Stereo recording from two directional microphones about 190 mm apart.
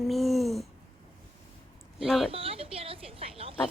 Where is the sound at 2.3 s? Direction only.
30° right (ahead or behind).